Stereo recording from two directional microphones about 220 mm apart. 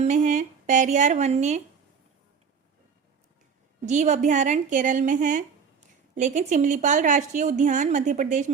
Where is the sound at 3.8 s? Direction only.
30° right (ahead or behind).